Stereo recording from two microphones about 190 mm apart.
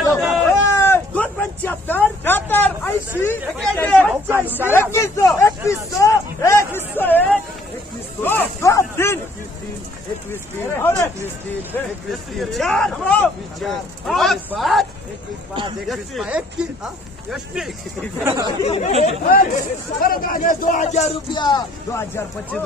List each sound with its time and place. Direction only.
0.7 s a sound: 15° left (ahead or behind)
3.2 s speech: 10° left (ahead or behind)
4.3 s speech: 10° right (ahead or behind)
4.6 s speech: 15° left (ahead or behind)
10.3 s speech: 10° left (ahead or behind)
12.1 s speech: centre (ahead or behind)
15.9 s speech: 5° right (ahead or behind)
18.2 s speech: 15° right (ahead or behind)
18.6 s speech: 35° left (ahead or behind)
19.2 s speech: 50° left (ahead or behind)
21.3 s speech: 25° left (ahead or behind)